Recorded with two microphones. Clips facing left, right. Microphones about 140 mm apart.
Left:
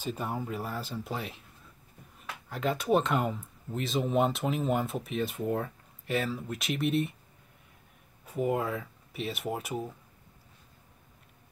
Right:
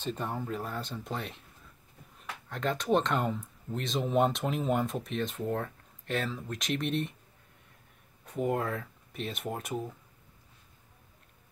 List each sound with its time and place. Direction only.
0.0 s speech: 5° left (ahead or behind)
8.3 s speech: 5° left (ahead or behind)